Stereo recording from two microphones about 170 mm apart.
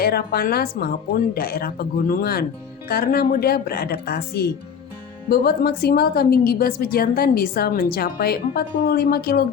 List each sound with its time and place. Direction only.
0.0 s a woman's voice: 65° left (ahead or behind)